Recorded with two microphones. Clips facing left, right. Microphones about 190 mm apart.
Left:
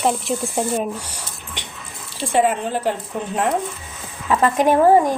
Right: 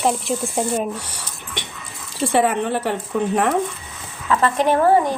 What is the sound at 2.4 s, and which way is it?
Speech, 65° right (ahead or behind).